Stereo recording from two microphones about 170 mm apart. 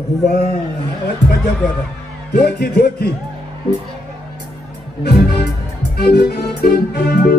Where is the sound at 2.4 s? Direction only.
70° left (ahead or behind).